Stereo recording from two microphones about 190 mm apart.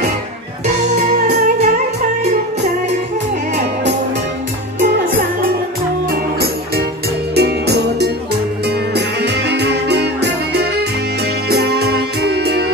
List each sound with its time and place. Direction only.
7.3 s music: 60° right (ahead or behind)